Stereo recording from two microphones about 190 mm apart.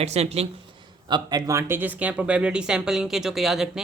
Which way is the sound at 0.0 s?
35° right (ahead or behind).